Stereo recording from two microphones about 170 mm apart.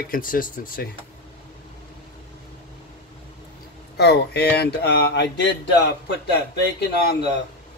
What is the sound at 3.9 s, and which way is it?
Speech, 70° left (ahead or behind).